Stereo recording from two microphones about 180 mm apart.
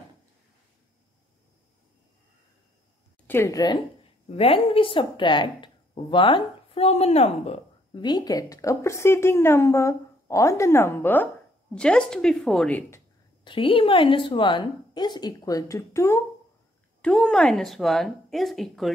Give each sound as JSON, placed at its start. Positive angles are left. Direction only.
{"t": 3.3, "sound": "speech", "side_deg": 15}
{"t": 4.4, "sound": "speech", "side_deg": 30}
{"t": 13.4, "sound": "speech", "side_deg": 30}